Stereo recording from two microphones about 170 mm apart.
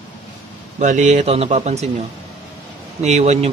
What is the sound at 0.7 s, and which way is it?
A man's voice, 45° right (ahead or behind).